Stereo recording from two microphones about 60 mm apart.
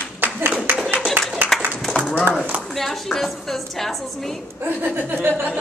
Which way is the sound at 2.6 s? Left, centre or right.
Centre.